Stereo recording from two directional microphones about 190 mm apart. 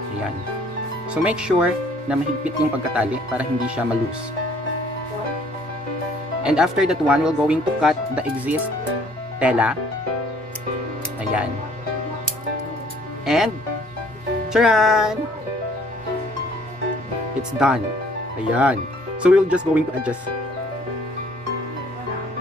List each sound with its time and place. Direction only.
1.1 s speech: 5° right (ahead or behind)
6.4 s speech: 5° right (ahead or behind)
13.2 s speech: centre (ahead or behind)
14.5 s speech: centre (ahead or behind)
17.4 s speech: 5° right (ahead or behind)